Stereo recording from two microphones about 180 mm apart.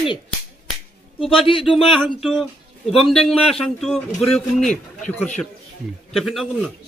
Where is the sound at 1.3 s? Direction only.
30° left (ahead or behind).